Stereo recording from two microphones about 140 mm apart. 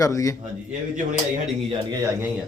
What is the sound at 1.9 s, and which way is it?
Speech, 20° right (ahead or behind).